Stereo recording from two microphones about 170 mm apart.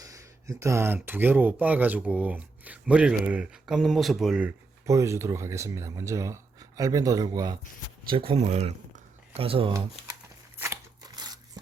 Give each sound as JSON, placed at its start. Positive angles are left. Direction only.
{"t": 0.0, "sound": "speech", "side_deg": -20}
{"t": 4.9, "sound": "speech", "side_deg": -15}
{"t": 10.6, "sound": "scissors", "side_deg": -20}